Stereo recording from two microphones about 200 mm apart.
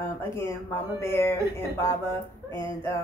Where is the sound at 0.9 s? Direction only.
10° left (ahead or behind).